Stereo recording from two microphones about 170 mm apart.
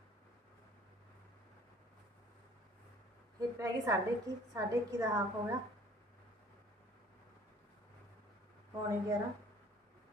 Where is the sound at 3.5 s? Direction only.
20° right (ahead or behind).